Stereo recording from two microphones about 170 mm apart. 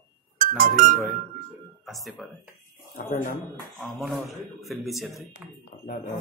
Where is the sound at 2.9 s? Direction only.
50° left (ahead or behind).